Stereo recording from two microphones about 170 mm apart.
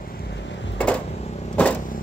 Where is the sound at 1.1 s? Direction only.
40° left (ahead or behind).